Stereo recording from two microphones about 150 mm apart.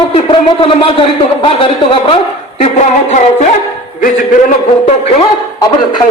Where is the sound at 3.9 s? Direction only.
65° left (ahead or behind).